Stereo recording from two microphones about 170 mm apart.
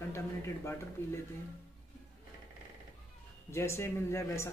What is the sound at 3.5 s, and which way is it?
Speech, 15° left (ahead or behind).